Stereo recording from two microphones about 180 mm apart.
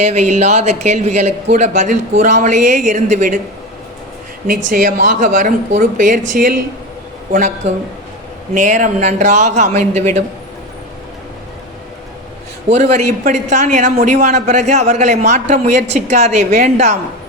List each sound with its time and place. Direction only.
0.0 s a man's voice: 40° right (ahead or behind)
4.4 s a man's voice: 45° right (ahead or behind)
12.6 s a man's voice: 40° right (ahead or behind)